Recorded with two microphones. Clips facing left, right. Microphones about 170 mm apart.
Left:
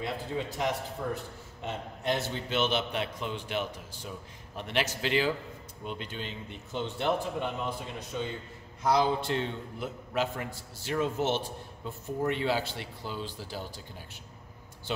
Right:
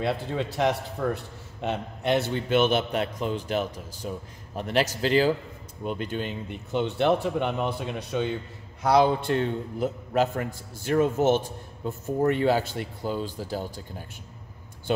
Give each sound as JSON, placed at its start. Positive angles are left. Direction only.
{"t": 0.0, "sound": "speech", "side_deg": -75}
{"t": 1.0, "sound": "a man's voice", "side_deg": -85}
{"t": 1.6, "sound": "a man's voice", "side_deg": -70}